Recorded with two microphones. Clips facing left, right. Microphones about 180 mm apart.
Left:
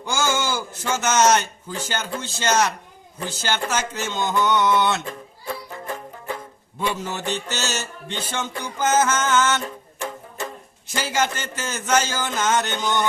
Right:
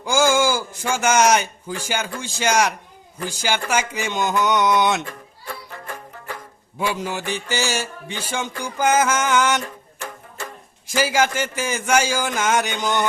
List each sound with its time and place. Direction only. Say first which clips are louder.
0.0 s a man's voice: right 6 dB; 10° right (ahead or behind)
5.0 s music: left 3 dB; 20° left (ahead or behind)
6.7 s a man's voice: right 2 dB; 10° right (ahead or behind)
9.6 s music: left 3 dB; 20° left (ahead or behind)
10.8 s a man's voice: right 4 dB; 10° right (ahead or behind)